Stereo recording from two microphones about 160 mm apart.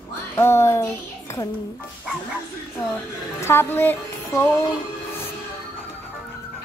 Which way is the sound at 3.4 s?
15° left (ahead or behind).